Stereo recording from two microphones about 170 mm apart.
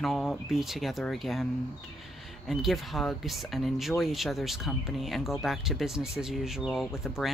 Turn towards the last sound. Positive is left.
turn(degrees=0)  # may be behind; listen again after turning